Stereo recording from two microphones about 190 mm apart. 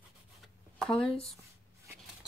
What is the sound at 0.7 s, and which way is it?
Speech, 5° left (ahead or behind).